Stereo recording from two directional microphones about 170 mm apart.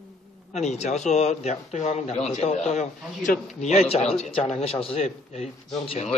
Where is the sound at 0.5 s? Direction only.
40° left (ahead or behind).